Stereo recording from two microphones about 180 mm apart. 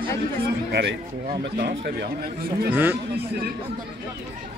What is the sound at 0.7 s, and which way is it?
Speech, 65° right (ahead or behind).